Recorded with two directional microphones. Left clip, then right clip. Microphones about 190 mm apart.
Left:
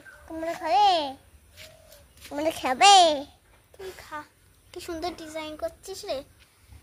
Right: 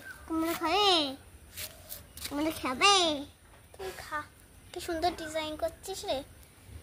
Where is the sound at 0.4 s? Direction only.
10° left (ahead or behind).